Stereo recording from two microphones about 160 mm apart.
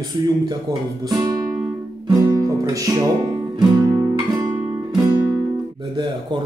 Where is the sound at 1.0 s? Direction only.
20° right (ahead or behind).